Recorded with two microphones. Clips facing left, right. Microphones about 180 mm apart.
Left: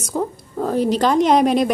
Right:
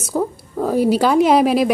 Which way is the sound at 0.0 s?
5° right (ahead or behind).